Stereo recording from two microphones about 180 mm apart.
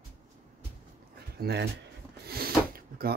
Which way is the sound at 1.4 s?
65° right (ahead or behind).